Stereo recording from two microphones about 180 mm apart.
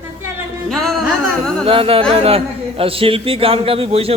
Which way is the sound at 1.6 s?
30° right (ahead or behind).